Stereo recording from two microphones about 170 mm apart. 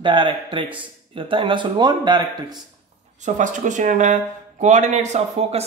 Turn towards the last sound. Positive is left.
turn(degrees=-40)  # may be behind; listen again after turning